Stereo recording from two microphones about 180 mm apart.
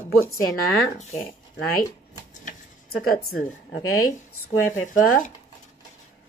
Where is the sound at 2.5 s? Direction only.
55° left (ahead or behind).